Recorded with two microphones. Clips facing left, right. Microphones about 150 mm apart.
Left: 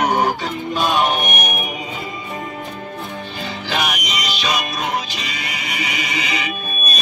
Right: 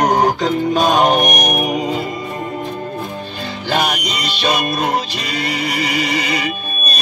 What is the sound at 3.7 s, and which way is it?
Music, 35° right (ahead or behind).